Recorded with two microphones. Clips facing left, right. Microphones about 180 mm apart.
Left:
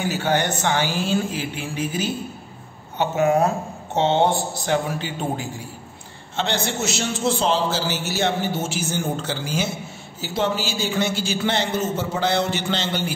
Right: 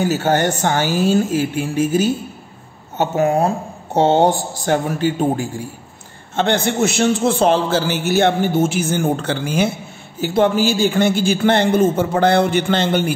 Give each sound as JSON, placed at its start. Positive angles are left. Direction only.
{"t": 0.0, "sound": "a man's voice", "side_deg": -45}